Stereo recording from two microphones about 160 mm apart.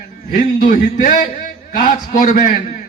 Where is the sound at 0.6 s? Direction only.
60° left (ahead or behind).